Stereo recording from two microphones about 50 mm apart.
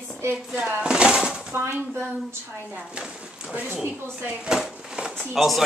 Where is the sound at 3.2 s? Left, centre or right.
Right.